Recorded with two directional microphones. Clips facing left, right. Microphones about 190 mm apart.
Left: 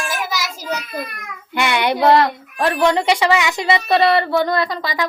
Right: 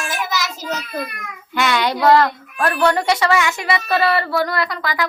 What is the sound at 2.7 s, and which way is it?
Speech, 15° left (ahead or behind).